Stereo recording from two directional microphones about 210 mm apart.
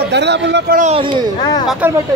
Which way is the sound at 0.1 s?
55° right (ahead or behind).